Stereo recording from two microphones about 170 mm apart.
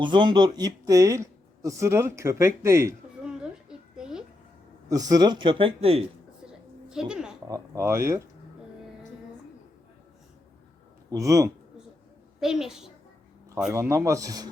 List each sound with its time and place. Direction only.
0.0 s speech: 30° right (ahead or behind)
3.2 s a sound: 5° right (ahead or behind)
4.9 s speech: 20° right (ahead or behind)
6.9 s a woman's voice: 5° right (ahead or behind)
7.4 s speech: 15° right (ahead or behind)
11.1 s speech: 20° right (ahead or behind)
12.4 s a woman's voice: 5° right (ahead or behind)
13.7 s speech: 15° right (ahead or behind)